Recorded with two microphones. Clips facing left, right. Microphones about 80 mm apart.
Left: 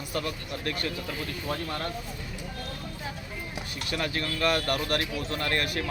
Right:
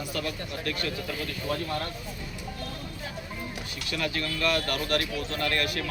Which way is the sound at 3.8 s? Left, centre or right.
Left.